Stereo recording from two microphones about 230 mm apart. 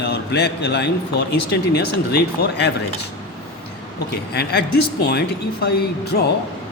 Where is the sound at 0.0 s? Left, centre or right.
Left.